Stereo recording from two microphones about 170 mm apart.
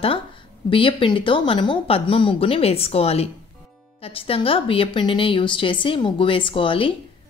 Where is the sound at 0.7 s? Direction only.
30° left (ahead or behind).